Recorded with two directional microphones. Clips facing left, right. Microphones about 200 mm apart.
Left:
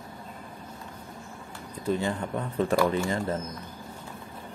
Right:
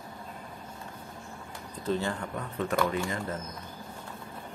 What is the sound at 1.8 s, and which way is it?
Speech, 15° left (ahead or behind).